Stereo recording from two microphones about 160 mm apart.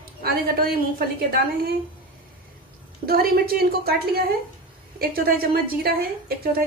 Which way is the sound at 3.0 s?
70° right (ahead or behind).